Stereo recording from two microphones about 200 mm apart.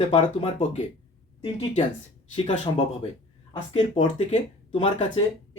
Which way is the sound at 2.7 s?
25° left (ahead or behind).